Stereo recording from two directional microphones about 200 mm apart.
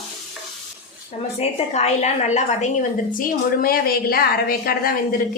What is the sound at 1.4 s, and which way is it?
A woman's voice, 35° left (ahead or behind).